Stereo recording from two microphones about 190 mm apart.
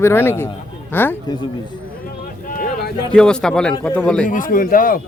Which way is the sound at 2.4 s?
45° left (ahead or behind).